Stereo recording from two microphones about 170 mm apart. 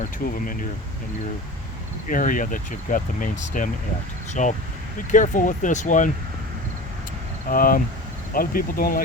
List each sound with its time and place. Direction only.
0.0 s speech: 55° left (ahead or behind)
2.0 s speech: 50° left (ahead or behind)
7.5 s speech: 55° left (ahead or behind)